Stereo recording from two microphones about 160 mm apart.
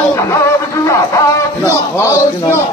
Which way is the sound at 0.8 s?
20° left (ahead or behind).